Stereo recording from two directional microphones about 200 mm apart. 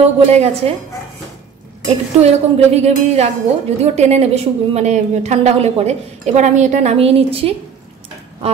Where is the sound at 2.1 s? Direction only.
35° right (ahead or behind).